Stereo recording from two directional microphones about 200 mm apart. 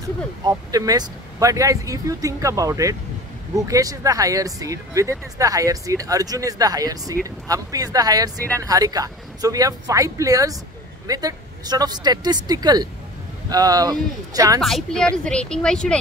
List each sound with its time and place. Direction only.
0.4 s speech: 20° right (ahead or behind)
14.6 s a woman's voice: centre (ahead or behind)